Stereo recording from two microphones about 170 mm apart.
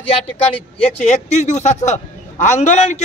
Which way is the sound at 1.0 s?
45° left (ahead or behind).